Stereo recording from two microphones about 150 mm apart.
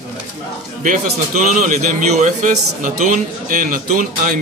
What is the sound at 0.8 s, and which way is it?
A man's voice, 60° right (ahead or behind).